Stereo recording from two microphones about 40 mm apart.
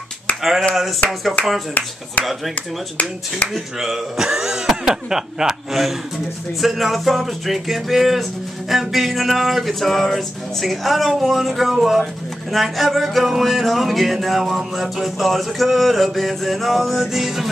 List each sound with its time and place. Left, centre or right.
0.4 s speech: centre
2.5 s speech: left
3.5 s speech: centre